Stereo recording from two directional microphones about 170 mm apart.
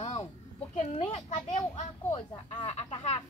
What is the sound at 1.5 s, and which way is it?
Speech, 40° left (ahead or behind).